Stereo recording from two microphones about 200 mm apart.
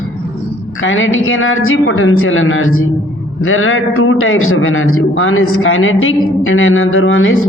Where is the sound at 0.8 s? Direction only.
75° left (ahead or behind).